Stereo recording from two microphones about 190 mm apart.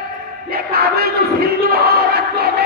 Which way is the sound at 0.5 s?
55° right (ahead or behind).